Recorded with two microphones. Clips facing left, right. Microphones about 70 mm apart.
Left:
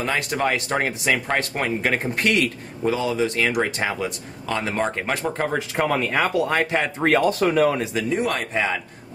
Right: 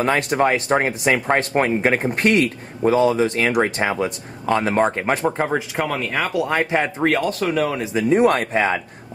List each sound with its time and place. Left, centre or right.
0.0 s speech: right
5.8 s speech: centre
7.0 s speech: centre
8.1 s speech: right